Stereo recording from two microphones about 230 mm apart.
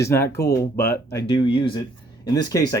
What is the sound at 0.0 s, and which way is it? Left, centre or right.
Speech, centre.